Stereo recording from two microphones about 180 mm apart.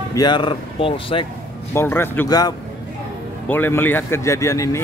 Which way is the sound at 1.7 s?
15° left (ahead or behind).